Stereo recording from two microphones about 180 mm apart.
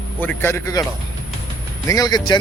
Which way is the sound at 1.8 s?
20° left (ahead or behind).